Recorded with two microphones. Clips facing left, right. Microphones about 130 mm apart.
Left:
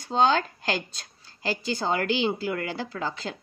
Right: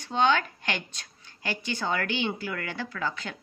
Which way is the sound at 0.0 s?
35° left (ahead or behind).